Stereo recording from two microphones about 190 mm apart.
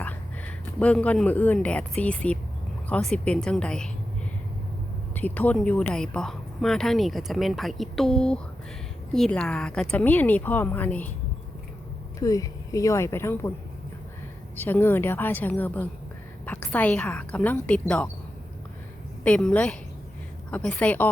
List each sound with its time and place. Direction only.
0.0 s speech: 5° left (ahead or behind)
5.1 s speech: 10° left (ahead or behind)
12.2 s speech: 15° left (ahead or behind)
14.5 s speech: 10° left (ahead or behind)
19.2 s speech: 5° left (ahead or behind)